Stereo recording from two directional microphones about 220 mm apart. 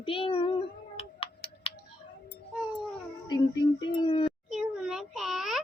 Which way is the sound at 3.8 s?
25° left (ahead or behind).